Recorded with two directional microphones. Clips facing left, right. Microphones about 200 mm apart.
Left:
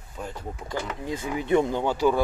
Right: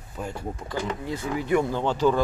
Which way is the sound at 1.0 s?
15° left (ahead or behind).